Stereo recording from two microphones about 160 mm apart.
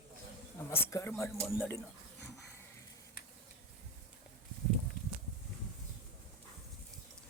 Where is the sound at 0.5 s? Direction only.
20° left (ahead or behind).